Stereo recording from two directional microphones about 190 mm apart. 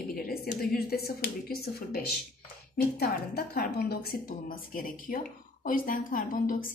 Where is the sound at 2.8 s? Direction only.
55° left (ahead or behind).